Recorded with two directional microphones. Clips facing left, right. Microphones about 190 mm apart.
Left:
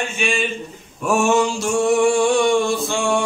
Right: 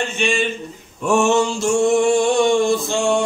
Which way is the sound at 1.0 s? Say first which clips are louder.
Right 1 dB; 10° left (ahead or behind).